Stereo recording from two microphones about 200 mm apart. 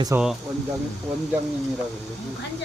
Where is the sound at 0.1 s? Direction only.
15° right (ahead or behind).